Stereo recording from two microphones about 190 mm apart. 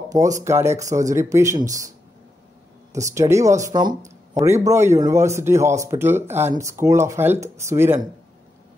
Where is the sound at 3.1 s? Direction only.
15° right (ahead or behind).